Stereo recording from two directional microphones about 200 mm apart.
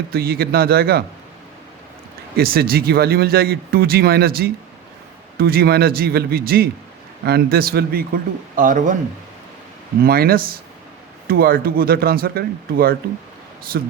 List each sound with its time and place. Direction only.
0.1 s speech: 50° right (ahead or behind)
2.3 s speech: 50° right (ahead or behind)
10.0 s speech: 50° right (ahead or behind)